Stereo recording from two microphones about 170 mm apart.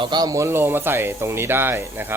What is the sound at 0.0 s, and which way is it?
Speech, 25° right (ahead or behind).